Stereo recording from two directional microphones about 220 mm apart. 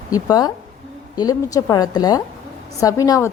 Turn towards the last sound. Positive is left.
turn(degrees=15)  # may be behind; listen again after turning